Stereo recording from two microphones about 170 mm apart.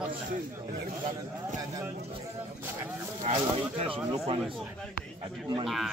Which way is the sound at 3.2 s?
40° right (ahead or behind).